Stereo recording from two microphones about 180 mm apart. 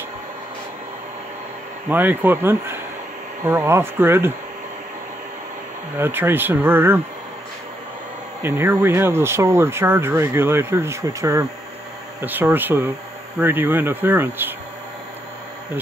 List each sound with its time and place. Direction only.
1.9 s speech: 10° right (ahead or behind)
5.9 s speech: 10° right (ahead or behind)
8.4 s speech: 10° right (ahead or behind)